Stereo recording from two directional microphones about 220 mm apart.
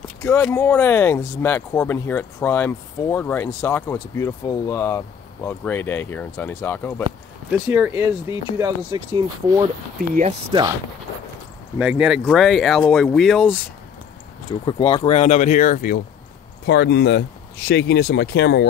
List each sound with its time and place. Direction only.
0.2 s speech: 10° left (ahead or behind)
7.5 s speech: 5° right (ahead or behind)
9.9 s speech: 35° right (ahead or behind)
10.5 s speech: 25° right (ahead or behind)
11.8 s speech: 5° right (ahead or behind)
14.6 s speech: 25° left (ahead or behind)
16.6 s speech: 50° left (ahead or behind)